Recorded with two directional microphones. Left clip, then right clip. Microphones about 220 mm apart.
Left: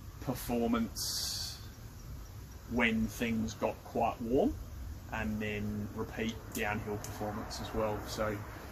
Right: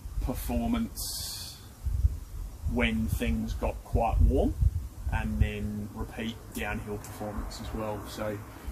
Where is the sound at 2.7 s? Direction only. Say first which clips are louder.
Right 2 dB; 15° right (ahead or behind).